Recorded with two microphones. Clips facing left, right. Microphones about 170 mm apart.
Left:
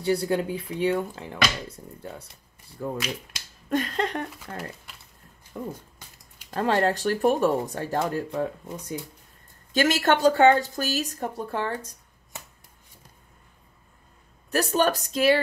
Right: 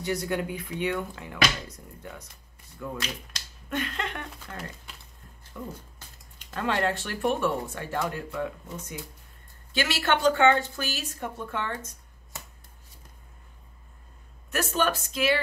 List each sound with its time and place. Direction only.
0.0 s speech: 30° left (ahead or behind)
9.8 s speech: 45° left (ahead or behind)
14.5 s speech: 35° left (ahead or behind)